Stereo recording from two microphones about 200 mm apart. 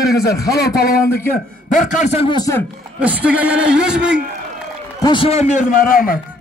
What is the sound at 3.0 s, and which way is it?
A man's voice, 5° right (ahead or behind).